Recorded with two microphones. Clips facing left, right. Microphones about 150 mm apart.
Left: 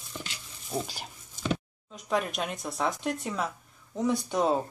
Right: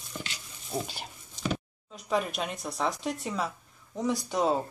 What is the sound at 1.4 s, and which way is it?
Speech, centre (ahead or behind).